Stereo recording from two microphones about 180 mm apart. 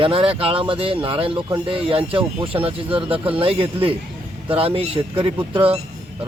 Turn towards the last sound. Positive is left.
turn(degrees=-30)  # may be behind; listen again after turning